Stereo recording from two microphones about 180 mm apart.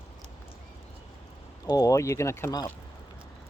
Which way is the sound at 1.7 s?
20° left (ahead or behind).